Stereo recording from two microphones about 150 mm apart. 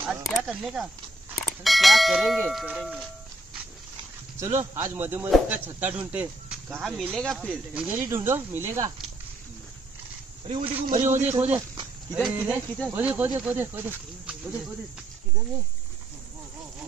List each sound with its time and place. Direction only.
0.0 s speech: 5° right (ahead or behind)
4.4 s speech: 20° right (ahead or behind); by 7.5 s 5° left (ahead or behind)
7.7 s speech: 10° right (ahead or behind)
10.5 s a man's voice: 35° right (ahead or behind)
10.9 s a man's voice: 55° right (ahead or behind)
11.1 s speech: 15° right (ahead or behind)